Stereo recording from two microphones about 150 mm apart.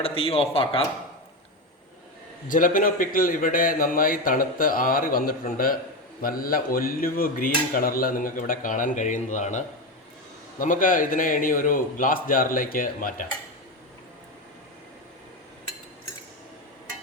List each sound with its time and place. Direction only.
0.0 s speech: 40° left (ahead or behind)
2.5 s a man's voice: 65° left (ahead or behind)